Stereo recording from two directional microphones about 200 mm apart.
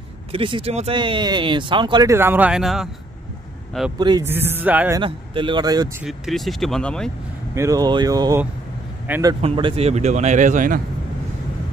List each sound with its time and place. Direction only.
0.3 s speech: 25° right (ahead or behind)
2.1 s speech: 10° right (ahead or behind)
4.0 s speech: 20° right (ahead or behind)
4.3 s speech: 10° right (ahead or behind)
5.0 s speech: 25° right (ahead or behind)
6.0 s speech: centre (ahead or behind)
7.5 s a man's voice: 15° right (ahead or behind)
9.3 s speech: 25° right (ahead or behind); by 10.8 s 40° right (ahead or behind)